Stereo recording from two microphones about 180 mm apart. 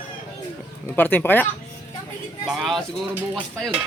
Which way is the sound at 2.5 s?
Centre (ahead or behind).